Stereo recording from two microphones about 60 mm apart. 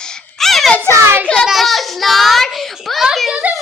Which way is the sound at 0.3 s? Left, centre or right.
Centre.